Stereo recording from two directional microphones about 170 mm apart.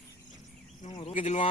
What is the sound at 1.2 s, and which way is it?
Speech, 40° left (ahead or behind).